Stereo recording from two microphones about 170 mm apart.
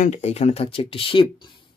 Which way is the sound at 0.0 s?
40° left (ahead or behind).